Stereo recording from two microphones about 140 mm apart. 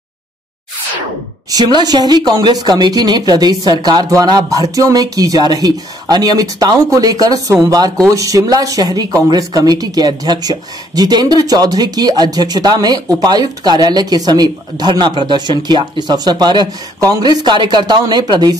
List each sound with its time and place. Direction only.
1.5 s speech: 30° right (ahead or behind)